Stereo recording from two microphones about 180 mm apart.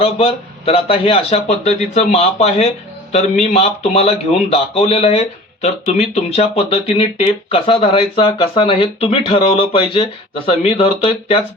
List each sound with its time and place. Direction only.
0.0 s speech: 35° left (ahead or behind)